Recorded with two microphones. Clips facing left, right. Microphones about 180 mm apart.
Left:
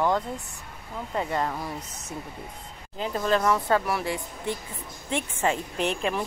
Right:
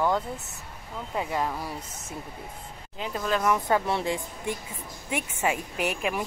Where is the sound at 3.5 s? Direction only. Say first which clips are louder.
Left 1 dB; 20° right (ahead or behind).